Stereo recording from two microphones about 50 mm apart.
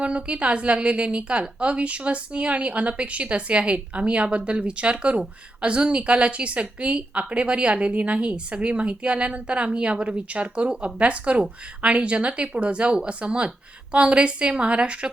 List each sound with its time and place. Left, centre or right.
0.0 s a woman's voice: right